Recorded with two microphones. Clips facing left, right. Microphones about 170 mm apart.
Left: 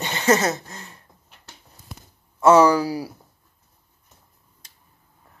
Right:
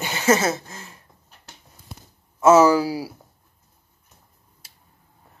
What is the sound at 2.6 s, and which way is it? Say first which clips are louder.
Speech: even; 10° right (ahead or behind).